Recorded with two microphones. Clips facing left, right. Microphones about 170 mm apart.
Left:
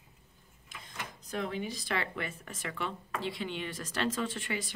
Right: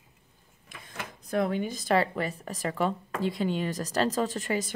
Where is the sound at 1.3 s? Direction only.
55° right (ahead or behind).